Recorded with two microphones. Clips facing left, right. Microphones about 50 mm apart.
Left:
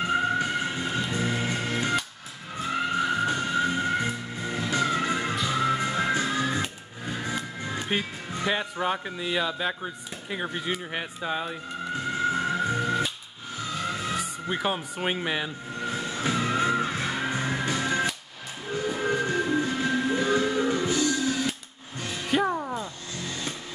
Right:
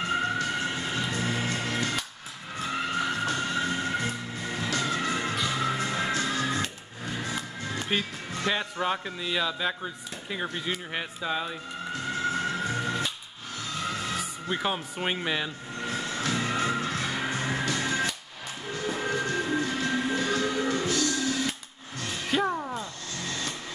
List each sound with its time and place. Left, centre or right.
0.0 s music: centre
10.3 s speech: centre
12.1 s music: centre
13.8 s emergency vehicle: centre
14.1 s speech: centre
15.2 s music: centre
18.7 s train: centre
19.6 s music: centre